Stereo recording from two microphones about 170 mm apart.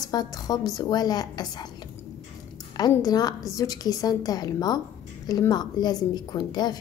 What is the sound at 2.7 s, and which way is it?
A woman's voice, 20° left (ahead or behind).